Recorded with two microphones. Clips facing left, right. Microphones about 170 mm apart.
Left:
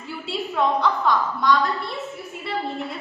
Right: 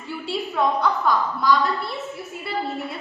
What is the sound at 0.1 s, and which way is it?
A woman's voice, centre (ahead or behind).